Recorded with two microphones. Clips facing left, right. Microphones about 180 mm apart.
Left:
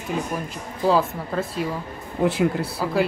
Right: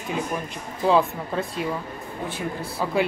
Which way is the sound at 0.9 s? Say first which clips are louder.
Even; centre (ahead or behind).